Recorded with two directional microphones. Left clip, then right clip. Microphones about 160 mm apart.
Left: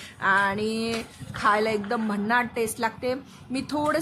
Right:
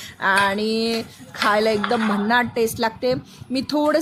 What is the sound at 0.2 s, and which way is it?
A woman's voice, 20° right (ahead or behind).